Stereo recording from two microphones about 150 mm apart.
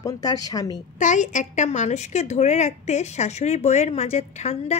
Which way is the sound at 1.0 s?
55° left (ahead or behind).